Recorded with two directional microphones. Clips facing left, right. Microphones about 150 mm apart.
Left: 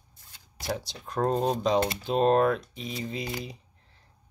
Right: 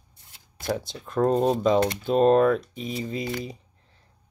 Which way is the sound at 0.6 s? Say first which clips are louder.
Right 4 dB; 50° right (ahead or behind).